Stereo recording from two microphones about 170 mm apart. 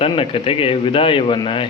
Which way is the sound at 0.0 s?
35° left (ahead or behind).